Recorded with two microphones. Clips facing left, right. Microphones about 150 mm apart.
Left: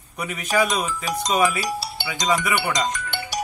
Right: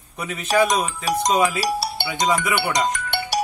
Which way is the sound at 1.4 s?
70° right (ahead or behind).